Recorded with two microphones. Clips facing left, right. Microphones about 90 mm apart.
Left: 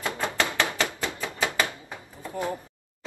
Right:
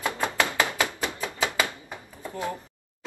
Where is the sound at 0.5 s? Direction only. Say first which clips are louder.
Right 1 dB; 15° right (ahead or behind).